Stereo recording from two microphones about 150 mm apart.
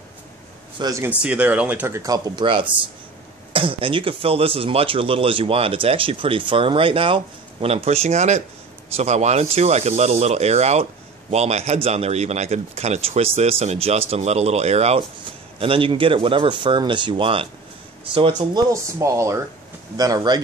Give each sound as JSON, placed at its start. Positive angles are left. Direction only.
{"t": 0.7, "sound": "speech", "side_deg": -20}
{"t": 1.2, "sound": "speech", "side_deg": -10}
{"t": 18.7, "sound": "speech", "side_deg": -20}